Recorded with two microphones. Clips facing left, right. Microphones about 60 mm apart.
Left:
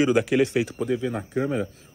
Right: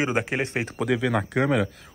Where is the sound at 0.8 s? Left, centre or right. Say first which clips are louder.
Right 2 dB; right.